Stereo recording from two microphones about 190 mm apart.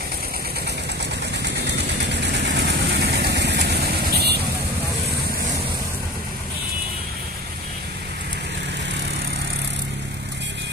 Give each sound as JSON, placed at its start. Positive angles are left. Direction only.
{"t": 1.3, "sound": "vehicle", "side_deg": -65}